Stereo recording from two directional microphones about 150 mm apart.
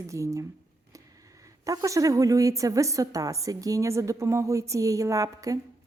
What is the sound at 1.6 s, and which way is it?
A woman's voice, 20° right (ahead or behind).